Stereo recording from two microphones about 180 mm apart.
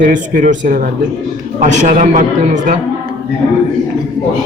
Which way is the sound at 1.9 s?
45° right (ahead or behind).